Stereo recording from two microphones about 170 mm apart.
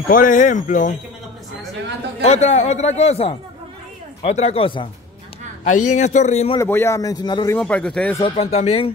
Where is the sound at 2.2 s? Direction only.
40° left (ahead or behind).